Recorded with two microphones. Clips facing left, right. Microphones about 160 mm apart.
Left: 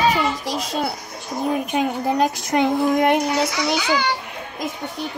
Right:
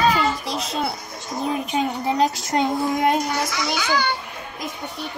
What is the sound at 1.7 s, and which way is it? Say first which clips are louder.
Speech: even; 60° left (ahead or behind).